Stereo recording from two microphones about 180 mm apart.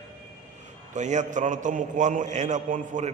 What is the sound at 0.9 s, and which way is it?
A man's voice, 40° right (ahead or behind).